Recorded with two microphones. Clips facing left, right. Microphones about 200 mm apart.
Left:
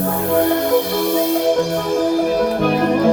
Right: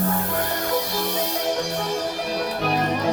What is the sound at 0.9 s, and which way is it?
Music, 55° left (ahead or behind).